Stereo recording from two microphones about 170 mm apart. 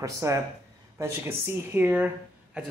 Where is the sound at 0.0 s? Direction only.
20° right (ahead or behind).